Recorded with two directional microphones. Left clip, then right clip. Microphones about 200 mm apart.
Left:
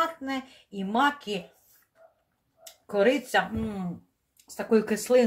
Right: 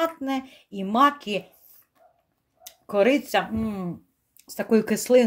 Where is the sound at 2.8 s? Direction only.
55° right (ahead or behind).